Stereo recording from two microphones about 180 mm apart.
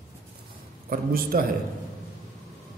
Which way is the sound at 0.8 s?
55° right (ahead or behind).